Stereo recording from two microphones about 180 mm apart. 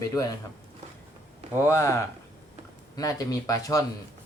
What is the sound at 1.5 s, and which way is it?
Speech, 15° left (ahead or behind).